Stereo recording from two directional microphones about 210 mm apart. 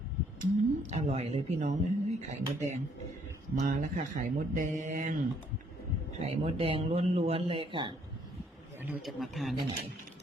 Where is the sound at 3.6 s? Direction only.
40° right (ahead or behind).